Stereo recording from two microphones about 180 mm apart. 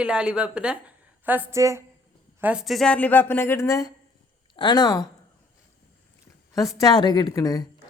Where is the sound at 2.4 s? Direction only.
5° right (ahead or behind); by 5.0 s 20° left (ahead or behind).